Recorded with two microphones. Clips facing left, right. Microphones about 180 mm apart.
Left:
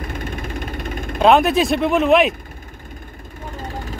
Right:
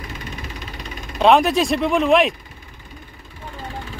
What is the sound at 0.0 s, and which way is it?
Vehicle, 50° left (ahead or behind).